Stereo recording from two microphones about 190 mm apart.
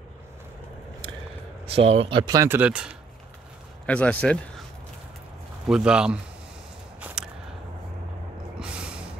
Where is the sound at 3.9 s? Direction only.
5° left (ahead or behind).